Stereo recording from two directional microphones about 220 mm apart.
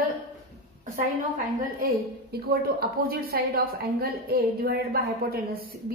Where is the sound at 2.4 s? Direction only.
45° right (ahead or behind).